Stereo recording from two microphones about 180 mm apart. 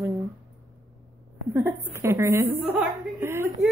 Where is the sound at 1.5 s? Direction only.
10° right (ahead or behind).